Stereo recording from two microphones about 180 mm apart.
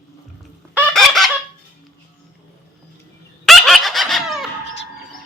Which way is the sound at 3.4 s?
Centre (ahead or behind).